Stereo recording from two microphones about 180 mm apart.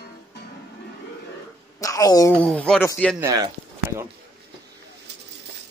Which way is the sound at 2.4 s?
5° left (ahead or behind).